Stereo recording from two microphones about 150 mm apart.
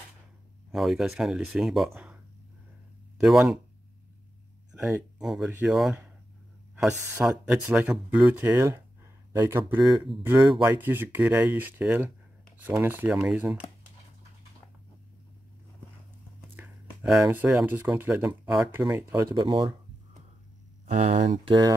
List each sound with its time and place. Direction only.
0.7 s speech: centre (ahead or behind)
3.2 s speech: centre (ahead or behind)
5.2 s speech: 5° right (ahead or behind)
10.6 s speech: 15° right (ahead or behind)
16.5 s speech: 10° right (ahead or behind)
19.4 s speech: 30° right (ahead or behind)
20.8 s speech: 50° right (ahead or behind)
21.5 s speech: 30° right (ahead or behind)